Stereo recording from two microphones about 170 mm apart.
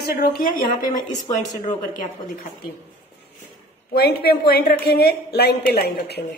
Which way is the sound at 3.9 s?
65° left (ahead or behind).